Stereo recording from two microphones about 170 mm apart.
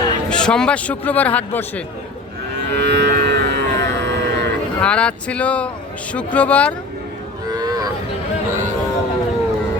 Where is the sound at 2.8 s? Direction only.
90° right.